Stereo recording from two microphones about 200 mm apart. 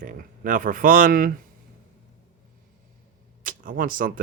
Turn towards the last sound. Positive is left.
turn(degrees=-45)  # may be behind; listen again after turning